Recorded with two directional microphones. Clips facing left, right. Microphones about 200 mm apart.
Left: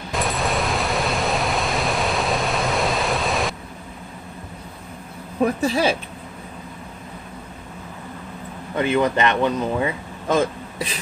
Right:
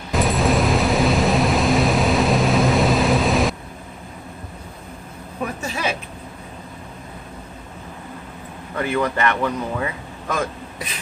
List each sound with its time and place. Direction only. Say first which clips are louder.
0.1 s vehicle: right 5 dB; centre (ahead or behind)
5.4 s speech: left 7 dB; 35° left (ahead or behind)
8.7 s speech: left 2 dB; 20° left (ahead or behind)